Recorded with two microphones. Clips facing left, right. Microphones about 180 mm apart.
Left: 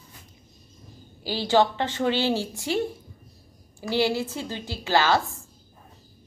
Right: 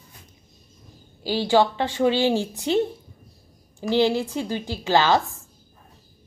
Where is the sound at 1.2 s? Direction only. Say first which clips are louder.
Right 2 dB; 15° right (ahead or behind).